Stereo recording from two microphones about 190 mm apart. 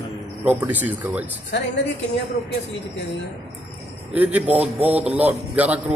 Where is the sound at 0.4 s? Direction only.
10° right (ahead or behind).